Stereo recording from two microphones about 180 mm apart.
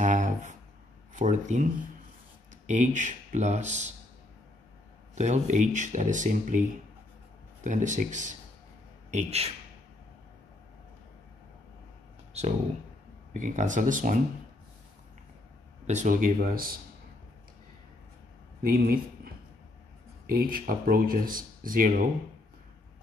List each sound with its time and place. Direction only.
0.0 s a sound: 45° right (ahead or behind)
1.1 s speech: 45° right (ahead or behind)
5.1 s speech: 40° right (ahead or behind)
7.6 s speech: 45° right (ahead or behind)
13.4 s speech: 45° right (ahead or behind)
15.9 s speech: 45° right (ahead or behind)
18.6 s speech: 55° right (ahead or behind)